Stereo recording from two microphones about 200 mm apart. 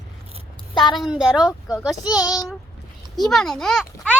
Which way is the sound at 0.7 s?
20° left (ahead or behind).